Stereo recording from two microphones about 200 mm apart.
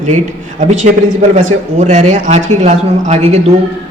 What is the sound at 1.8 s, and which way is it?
A man's voice, 35° right (ahead or behind).